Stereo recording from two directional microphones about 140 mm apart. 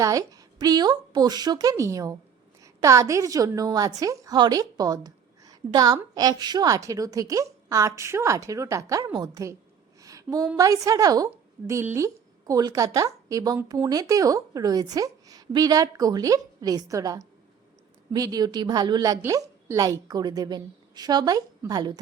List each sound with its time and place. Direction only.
0.0 s a woman's voice: 25° right (ahead or behind)
10.0 s a sound: 25° right (ahead or behind)
10.6 s a woman's voice: 25° right (ahead or behind)